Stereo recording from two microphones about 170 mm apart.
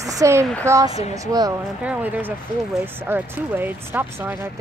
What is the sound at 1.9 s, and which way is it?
Speech, 10° right (ahead or behind).